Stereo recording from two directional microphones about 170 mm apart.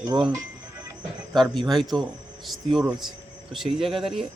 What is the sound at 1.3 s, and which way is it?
Speech, centre (ahead or behind).